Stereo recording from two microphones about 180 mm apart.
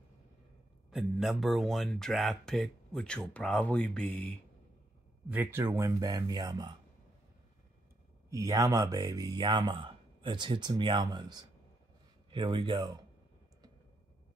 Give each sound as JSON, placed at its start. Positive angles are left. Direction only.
{"t": 0.8, "sound": "speech", "side_deg": 0}
{"t": 5.3, "sound": "speech", "side_deg": -10}
{"t": 8.3, "sound": "speech", "side_deg": -20}